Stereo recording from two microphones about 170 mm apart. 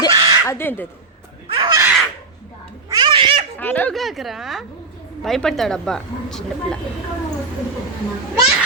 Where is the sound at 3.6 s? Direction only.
10° left (ahead or behind).